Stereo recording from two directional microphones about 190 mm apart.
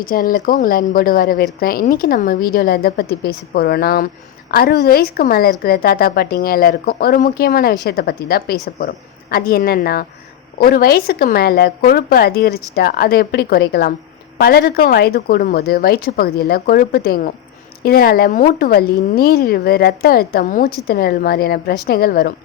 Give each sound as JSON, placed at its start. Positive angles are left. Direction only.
{"t": 0.0, "sound": "speech", "side_deg": 50}